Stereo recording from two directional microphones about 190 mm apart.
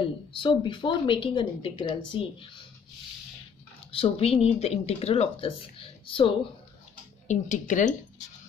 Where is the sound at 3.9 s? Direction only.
30° left (ahead or behind).